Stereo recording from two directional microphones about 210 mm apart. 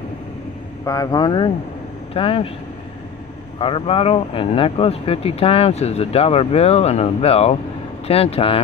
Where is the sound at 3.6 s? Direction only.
25° left (ahead or behind).